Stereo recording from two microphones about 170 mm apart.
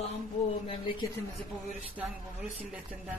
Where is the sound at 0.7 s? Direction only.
30° left (ahead or behind).